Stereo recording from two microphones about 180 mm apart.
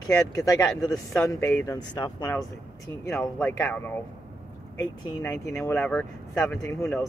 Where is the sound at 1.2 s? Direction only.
15° left (ahead or behind).